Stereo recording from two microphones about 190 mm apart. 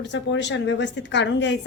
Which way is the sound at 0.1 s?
70° left (ahead or behind).